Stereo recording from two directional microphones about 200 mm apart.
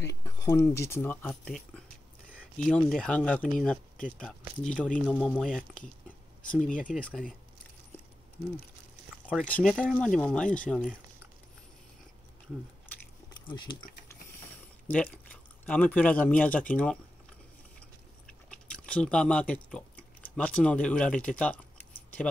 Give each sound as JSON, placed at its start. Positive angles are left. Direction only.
{"t": 0.1, "sound": "speech", "side_deg": 15}
{"t": 9.4, "sound": "speech", "side_deg": 5}
{"t": 13.5, "sound": "speech", "side_deg": 25}
{"t": 14.9, "sound": "speech", "side_deg": 10}
{"t": 18.5, "sound": "a sound", "side_deg": 5}
{"t": 20.3, "sound": "speech", "side_deg": 5}